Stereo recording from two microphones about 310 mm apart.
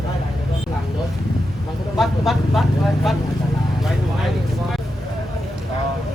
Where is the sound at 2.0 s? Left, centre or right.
Centre.